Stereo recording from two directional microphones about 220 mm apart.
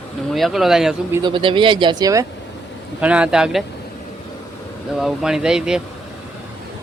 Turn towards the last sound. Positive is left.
turn(degrees=-5)  # may be behind; listen again after turning